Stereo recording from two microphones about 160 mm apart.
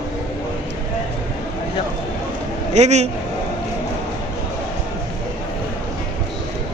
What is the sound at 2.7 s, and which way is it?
Speech, 45° right (ahead or behind).